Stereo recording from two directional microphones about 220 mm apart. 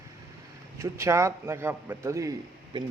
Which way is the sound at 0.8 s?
15° right (ahead or behind).